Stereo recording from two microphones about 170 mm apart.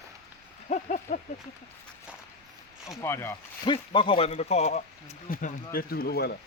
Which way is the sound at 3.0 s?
15° left (ahead or behind).